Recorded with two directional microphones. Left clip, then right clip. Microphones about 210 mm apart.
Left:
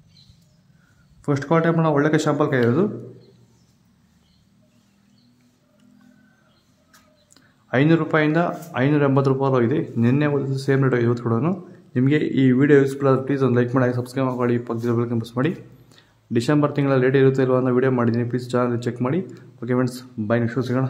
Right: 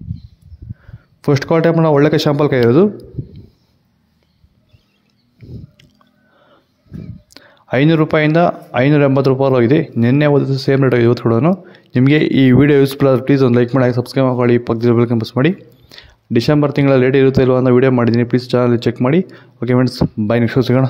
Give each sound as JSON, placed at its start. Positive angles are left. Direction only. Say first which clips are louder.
{"t": 1.2, "sound": "speech", "louder": "right 7 dB", "side_deg": -30}
{"t": 7.3, "sound": "speech", "louder": "right 5 dB", "side_deg": -35}